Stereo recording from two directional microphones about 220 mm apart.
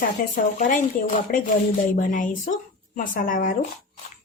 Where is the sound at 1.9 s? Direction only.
35° left (ahead or behind).